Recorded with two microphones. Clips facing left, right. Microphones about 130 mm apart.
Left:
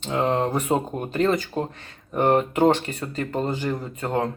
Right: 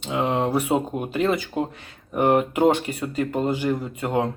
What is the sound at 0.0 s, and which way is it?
Speech, 10° right (ahead or behind).